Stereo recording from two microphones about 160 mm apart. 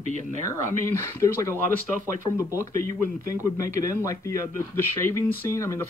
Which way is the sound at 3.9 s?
20° left (ahead or behind).